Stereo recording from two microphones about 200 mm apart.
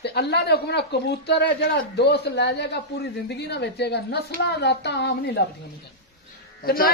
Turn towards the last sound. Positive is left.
turn(degrees=45)  # may be behind; listen again after turning